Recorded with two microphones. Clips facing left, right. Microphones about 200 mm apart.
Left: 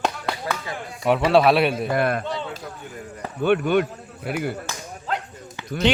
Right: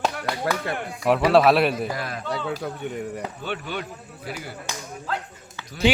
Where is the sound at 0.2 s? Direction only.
65° right (ahead or behind).